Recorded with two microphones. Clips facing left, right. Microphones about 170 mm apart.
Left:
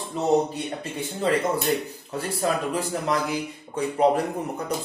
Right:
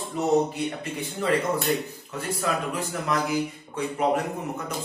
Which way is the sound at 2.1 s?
35° left (ahead or behind).